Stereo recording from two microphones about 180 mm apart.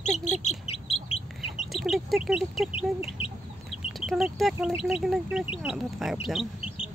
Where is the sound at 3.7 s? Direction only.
Centre (ahead or behind).